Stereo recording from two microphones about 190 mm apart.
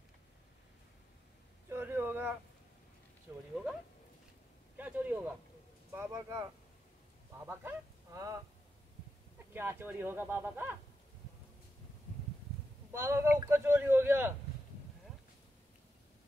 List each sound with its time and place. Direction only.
1.7 s a sound: 10° right (ahead or behind)
4.7 s a man's voice: 10° right (ahead or behind)
9.5 s a man's voice: 10° right (ahead or behind)
12.9 s a man's voice: 15° right (ahead or behind)